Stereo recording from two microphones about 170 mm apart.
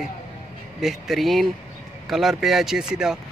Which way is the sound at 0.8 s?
Centre (ahead or behind).